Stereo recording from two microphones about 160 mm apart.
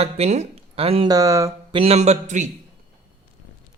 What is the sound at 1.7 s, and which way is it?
Speech, 35° right (ahead or behind).